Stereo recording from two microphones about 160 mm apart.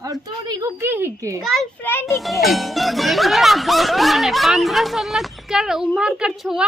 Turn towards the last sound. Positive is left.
turn(degrees=-5)  # may be behind; listen again after turning